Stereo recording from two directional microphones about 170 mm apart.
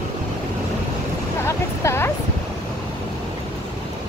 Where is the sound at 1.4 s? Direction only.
15° left (ahead or behind).